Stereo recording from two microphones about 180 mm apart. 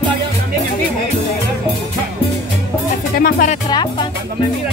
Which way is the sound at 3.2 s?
55° left (ahead or behind).